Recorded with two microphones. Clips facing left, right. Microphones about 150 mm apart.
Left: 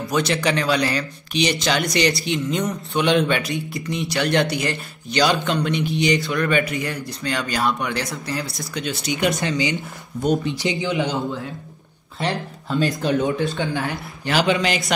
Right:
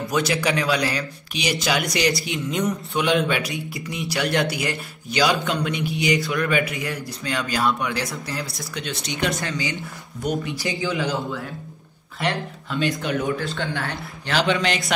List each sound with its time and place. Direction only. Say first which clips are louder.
0.1 s speech: left 2 dB; 5° right (ahead or behind)
9.4 s speech: left 5 dB; 20° left (ahead or behind)
12.2 s speech: even; 40° left (ahead or behind)
13.0 s speech: left 4 dB; 20° left (ahead or behind); by 14.9 s centre (ahead or behind)